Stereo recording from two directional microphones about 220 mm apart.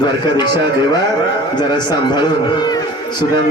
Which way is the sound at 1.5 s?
20° left (ahead or behind).